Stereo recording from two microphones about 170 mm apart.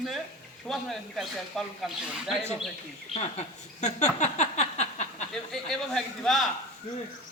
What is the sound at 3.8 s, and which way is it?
Speech, 45° left (ahead or behind).